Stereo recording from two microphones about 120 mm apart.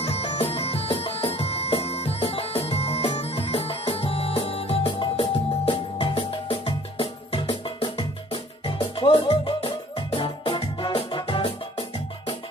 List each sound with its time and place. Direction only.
0.0 s music: 55° left (ahead or behind)
9.6 s music: 55° left (ahead or behind)